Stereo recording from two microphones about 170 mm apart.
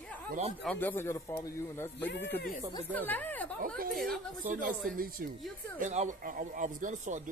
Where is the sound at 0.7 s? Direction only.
10° left (ahead or behind).